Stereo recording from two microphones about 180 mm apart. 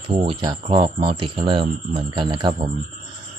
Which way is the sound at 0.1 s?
30° right (ahead or behind).